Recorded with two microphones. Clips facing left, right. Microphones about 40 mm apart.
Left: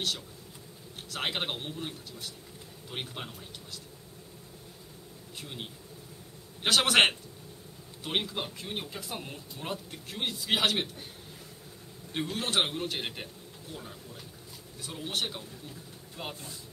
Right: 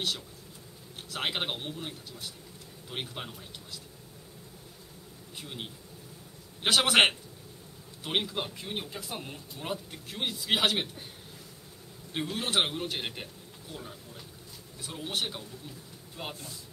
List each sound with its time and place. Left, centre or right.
1.1 s speech: centre
5.4 s speech: centre
12.1 s speech: centre
14.8 s speech: centre